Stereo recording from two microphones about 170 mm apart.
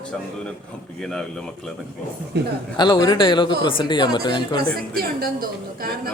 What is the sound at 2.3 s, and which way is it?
Speech, 80° right.